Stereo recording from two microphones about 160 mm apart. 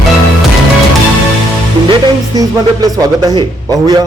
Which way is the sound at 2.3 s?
25° right (ahead or behind).